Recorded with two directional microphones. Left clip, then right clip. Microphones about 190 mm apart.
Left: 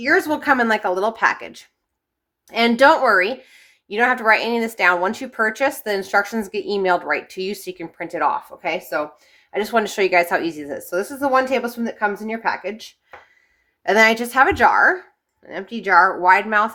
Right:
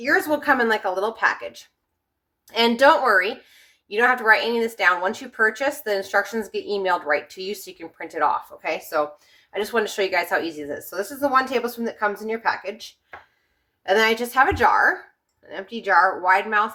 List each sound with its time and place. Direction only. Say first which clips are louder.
0.0 s speech: left 2 dB; 55° left (ahead or behind)
2.5 s a woman's voice: left 2 dB; 40° left (ahead or behind)
13.8 s speech: left 4 dB; 55° left (ahead or behind)